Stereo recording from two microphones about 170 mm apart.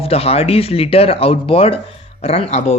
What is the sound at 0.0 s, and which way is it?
A man's voice, 35° left (ahead or behind).